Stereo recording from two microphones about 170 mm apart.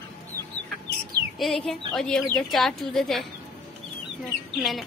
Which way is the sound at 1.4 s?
Centre (ahead or behind).